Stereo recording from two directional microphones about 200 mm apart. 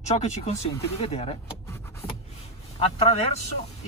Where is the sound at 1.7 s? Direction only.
15° left (ahead or behind).